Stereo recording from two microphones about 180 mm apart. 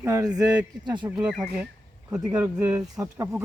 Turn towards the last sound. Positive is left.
turn(degrees=-20)  # may be behind; listen again after turning